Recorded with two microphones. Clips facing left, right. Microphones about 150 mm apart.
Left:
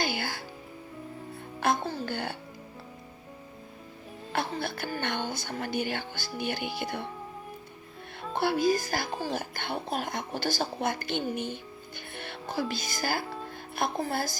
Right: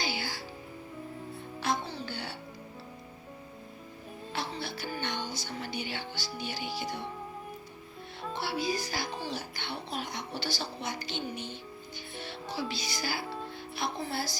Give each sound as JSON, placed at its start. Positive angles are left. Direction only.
{"t": 0.0, "sound": "music", "side_deg": 50}
{"t": 1.6, "sound": "music", "side_deg": 50}
{"t": 4.3, "sound": "music", "side_deg": 50}
{"t": 6.4, "sound": "speech", "side_deg": 55}
{"t": 8.4, "sound": "speech", "side_deg": 50}
{"t": 12.1, "sound": "music", "side_deg": 55}